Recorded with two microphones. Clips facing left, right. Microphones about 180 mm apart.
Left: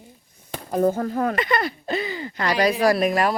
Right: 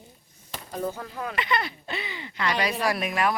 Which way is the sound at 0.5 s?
50° left (ahead or behind).